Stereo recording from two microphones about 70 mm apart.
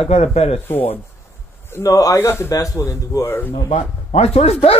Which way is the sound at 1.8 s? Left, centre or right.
Left.